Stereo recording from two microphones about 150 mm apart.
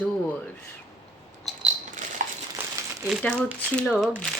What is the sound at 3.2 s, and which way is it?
Speech, 5° left (ahead or behind).